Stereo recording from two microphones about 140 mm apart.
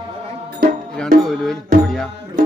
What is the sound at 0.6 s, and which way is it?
Music, 90° right.